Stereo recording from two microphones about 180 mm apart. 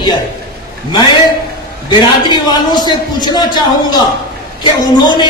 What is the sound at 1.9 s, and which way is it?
A man's voice, 25° left (ahead or behind).